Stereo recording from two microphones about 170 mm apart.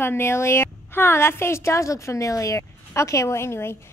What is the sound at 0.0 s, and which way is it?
A woman's voice, 15° left (ahead or behind).